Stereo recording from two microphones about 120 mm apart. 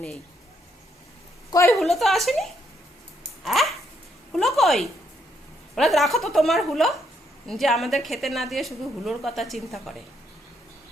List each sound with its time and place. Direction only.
1.5 s a woman's voice: 25° left (ahead or behind)
1.7 s a woman's voice: centre (ahead or behind)